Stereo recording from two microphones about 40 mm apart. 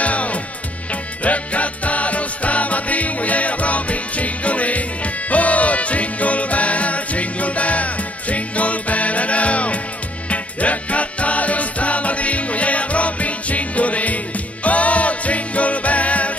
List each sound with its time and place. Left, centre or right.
0.0 s music: left